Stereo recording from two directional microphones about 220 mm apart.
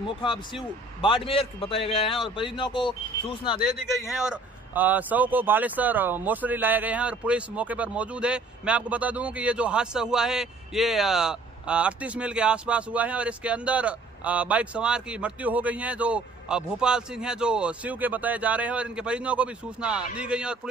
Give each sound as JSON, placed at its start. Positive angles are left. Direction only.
{"t": 1.0, "sound": "speech", "side_deg": 25}
{"t": 3.6, "sound": "a man's voice", "side_deg": 0}